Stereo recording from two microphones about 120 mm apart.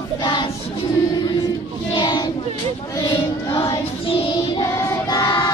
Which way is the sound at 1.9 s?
40° left (ahead or behind).